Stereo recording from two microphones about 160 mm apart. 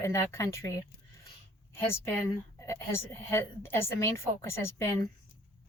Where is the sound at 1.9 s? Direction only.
15° left (ahead or behind).